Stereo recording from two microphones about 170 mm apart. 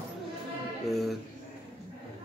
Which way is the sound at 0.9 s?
Centre (ahead or behind).